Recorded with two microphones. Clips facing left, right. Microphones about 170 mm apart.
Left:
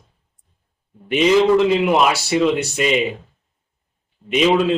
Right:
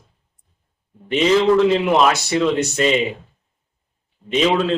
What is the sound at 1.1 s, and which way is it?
A man's voice, 15° left (ahead or behind).